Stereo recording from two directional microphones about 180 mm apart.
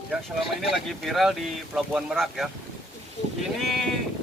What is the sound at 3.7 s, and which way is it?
Sheep, centre (ahead or behind).